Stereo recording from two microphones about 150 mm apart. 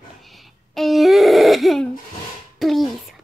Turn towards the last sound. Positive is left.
turn(degrees=0)  # may be behind; listen again after turning